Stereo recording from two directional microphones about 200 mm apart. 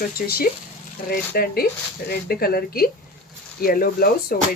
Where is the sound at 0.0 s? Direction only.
50° left (ahead or behind).